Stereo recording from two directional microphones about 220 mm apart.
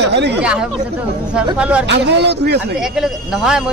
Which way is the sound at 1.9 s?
50° right (ahead or behind).